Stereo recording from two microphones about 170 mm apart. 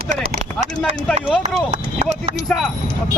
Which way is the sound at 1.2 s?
5° right (ahead or behind).